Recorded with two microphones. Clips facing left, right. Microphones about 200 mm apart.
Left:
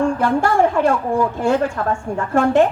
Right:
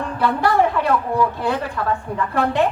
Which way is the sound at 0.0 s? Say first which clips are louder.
Left 3 dB; 45° left (ahead or behind).